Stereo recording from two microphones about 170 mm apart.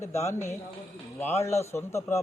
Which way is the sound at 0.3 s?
15° left (ahead or behind).